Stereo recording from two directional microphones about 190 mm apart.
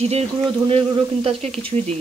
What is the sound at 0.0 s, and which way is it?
Speech, 35° right (ahead or behind).